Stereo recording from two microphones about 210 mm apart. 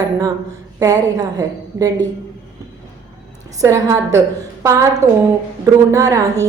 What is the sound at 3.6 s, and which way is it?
A woman's voice, 15° right (ahead or behind).